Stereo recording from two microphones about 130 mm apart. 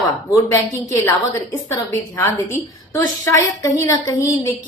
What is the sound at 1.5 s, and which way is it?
A woman's voice, 20° left (ahead or behind).